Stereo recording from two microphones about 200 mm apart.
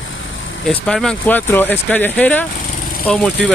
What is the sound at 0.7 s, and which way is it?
Speech, 5° left (ahead or behind).